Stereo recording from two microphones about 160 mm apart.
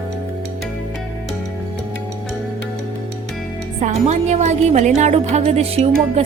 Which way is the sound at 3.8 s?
45° right (ahead or behind).